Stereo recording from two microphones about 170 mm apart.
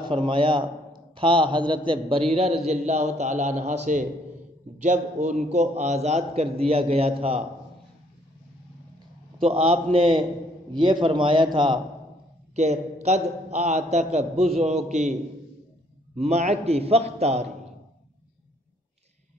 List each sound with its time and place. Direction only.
0.0 s a man's voice: 30° right (ahead or behind)
9.4 s a man's voice: 35° right (ahead or behind)
12.5 s a man's voice: 40° right (ahead or behind)
16.2 s a man's voice: 40° right (ahead or behind)